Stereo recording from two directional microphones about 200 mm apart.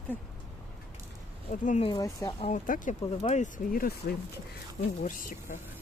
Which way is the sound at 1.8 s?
20° left (ahead or behind).